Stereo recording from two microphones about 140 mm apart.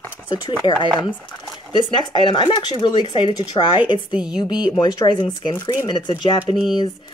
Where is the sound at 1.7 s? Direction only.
35° left (ahead or behind).